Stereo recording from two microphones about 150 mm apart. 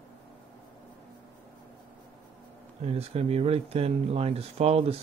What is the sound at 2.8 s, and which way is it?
Speech, 45° right (ahead or behind).